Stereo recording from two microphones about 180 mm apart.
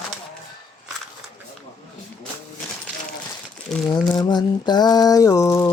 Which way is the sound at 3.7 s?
Centre (ahead or behind).